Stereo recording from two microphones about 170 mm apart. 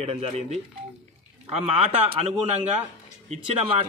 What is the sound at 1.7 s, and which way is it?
Speech, 35° right (ahead or behind).